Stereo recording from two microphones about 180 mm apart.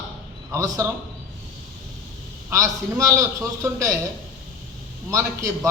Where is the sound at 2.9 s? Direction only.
15° right (ahead or behind).